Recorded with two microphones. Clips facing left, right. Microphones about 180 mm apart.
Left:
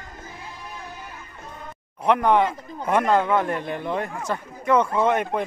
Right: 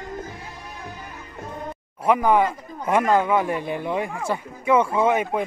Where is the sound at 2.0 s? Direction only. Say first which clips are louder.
Even; 5° right (ahead or behind).